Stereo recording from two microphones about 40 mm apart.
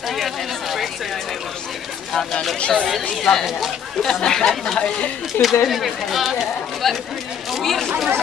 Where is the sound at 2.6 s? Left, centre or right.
Left.